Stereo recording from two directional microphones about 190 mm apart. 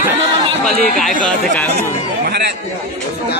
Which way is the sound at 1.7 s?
55° right (ahead or behind).